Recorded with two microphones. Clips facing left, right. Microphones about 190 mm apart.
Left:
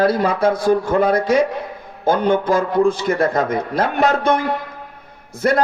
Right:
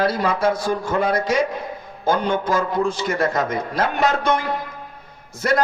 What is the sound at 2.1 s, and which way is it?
Speech, 55° left (ahead or behind).